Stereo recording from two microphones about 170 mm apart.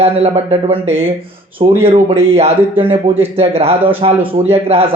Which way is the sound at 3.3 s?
35° right (ahead or behind).